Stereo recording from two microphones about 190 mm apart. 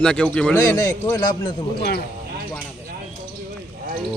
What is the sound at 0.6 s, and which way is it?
A man's voice, 15° left (ahead or behind).